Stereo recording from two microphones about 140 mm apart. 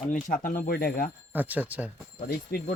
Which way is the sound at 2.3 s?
90° left.